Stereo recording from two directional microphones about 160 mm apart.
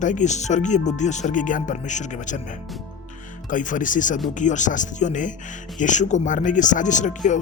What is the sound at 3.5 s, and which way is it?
Speech, 55° left (ahead or behind).